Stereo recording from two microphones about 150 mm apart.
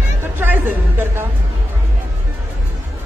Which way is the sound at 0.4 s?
10° right (ahead or behind).